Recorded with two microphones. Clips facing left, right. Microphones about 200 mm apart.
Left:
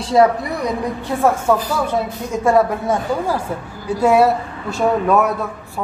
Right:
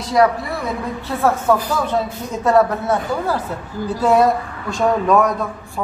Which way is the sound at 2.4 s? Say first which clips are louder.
Even; 10° left (ahead or behind).